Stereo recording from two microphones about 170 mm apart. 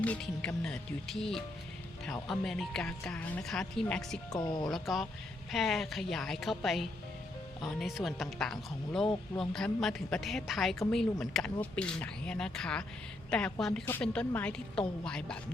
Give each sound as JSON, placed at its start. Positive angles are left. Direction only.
{"t": 0.0, "sound": "a woman's voice", "side_deg": 5}
{"t": 4.3, "sound": "speech", "side_deg": 25}
{"t": 4.7, "sound": "a woman's voice", "side_deg": 0}